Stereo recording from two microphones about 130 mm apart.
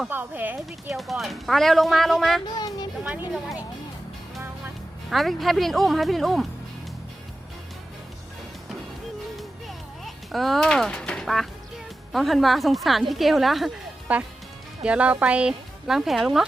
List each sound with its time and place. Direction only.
0.1 s speech: 15° right (ahead or behind)
0.9 s a woman's voice: centre (ahead or behind)
2.6 s a sound: 30° left (ahead or behind)
3.0 s speech: 5° right (ahead or behind)
5.1 s a woman's voice: centre (ahead or behind)
9.3 s music: centre (ahead or behind)
12.1 s a woman's voice: centre (ahead or behind)